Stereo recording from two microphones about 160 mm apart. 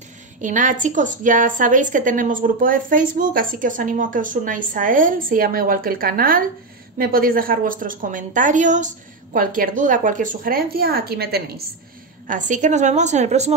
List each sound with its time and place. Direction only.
0.4 s a woman's voice: 50° right (ahead or behind); by 11.6 s 80° right
12.3 s a woman's voice: 50° right (ahead or behind)